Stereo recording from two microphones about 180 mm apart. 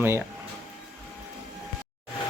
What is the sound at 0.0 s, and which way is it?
Speech, 15° right (ahead or behind).